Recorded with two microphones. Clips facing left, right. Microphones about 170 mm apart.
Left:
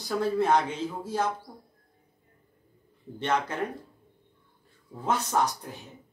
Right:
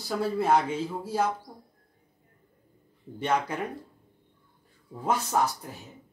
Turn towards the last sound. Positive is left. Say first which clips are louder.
# even
turn(degrees=-10)  # may be behind; listen again after turning